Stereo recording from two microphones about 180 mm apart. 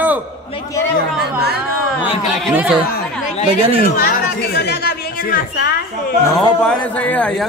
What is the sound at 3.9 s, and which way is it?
Speech, 55° left (ahead or behind).